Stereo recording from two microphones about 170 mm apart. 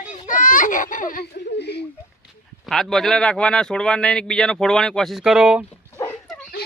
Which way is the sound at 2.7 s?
Centre (ahead or behind).